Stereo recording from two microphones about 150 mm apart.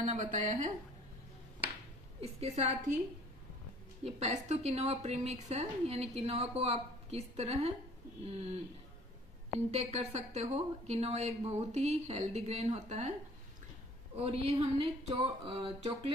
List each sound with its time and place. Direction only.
0.0 s a woman's voice: 55° right (ahead or behind)
2.4 s a woman's voice: 45° right (ahead or behind)
4.0 s a woman's voice: 45° right (ahead or behind)
9.7 s a woman's voice: 45° right (ahead or behind)
14.2 s speech: 40° right (ahead or behind)